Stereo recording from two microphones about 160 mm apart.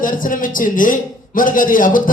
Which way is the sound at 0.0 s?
60° left (ahead or behind).